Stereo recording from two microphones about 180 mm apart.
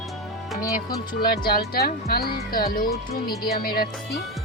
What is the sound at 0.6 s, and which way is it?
Speech, 20° left (ahead or behind).